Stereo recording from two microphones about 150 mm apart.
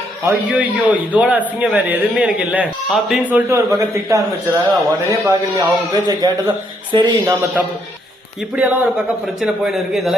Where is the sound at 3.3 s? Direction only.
20° right (ahead or behind).